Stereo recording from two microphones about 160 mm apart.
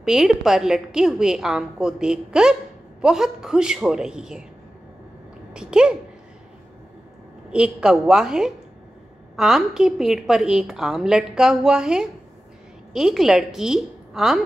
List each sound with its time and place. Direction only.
0.0 s a woman's voice: centre (ahead or behind)
5.5 s a child's voice: 5° right (ahead or behind)
7.5 s a woman's voice: 5° right (ahead or behind)